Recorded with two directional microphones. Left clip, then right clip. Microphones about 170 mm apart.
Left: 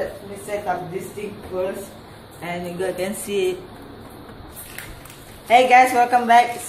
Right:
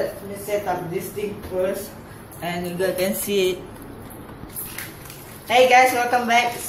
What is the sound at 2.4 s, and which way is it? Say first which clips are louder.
Speech: right 2 dB; 5° right (ahead or behind).